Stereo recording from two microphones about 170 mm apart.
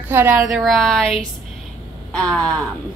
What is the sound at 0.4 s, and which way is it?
Speech, centre (ahead or behind).